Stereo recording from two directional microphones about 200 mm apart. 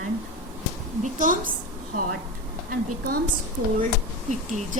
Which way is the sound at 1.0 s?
40° right (ahead or behind).